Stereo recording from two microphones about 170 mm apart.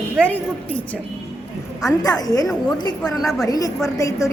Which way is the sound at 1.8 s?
20° left (ahead or behind).